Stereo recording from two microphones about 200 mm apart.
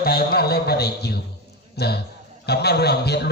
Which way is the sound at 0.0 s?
50° left (ahead or behind).